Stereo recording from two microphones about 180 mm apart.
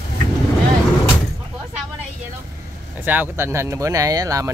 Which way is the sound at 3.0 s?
10° right (ahead or behind).